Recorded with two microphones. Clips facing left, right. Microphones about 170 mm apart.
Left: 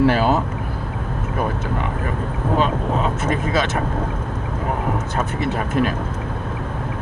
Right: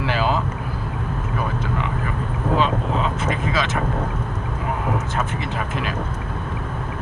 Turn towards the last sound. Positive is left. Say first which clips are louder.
# left 6 dB
turn(degrees=40)  # may be behind; listen again after turning